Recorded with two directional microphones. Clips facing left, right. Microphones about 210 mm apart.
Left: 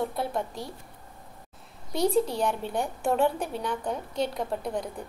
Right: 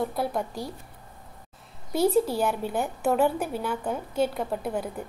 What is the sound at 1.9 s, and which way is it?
A woman's voice, 5° right (ahead or behind).